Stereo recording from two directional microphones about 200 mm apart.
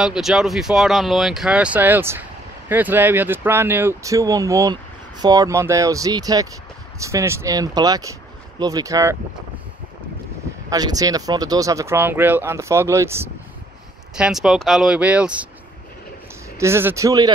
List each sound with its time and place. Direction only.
0.0 s speech: centre (ahead or behind)
10.7 s speech: 20° right (ahead or behind)
16.5 s speech: 15° right (ahead or behind)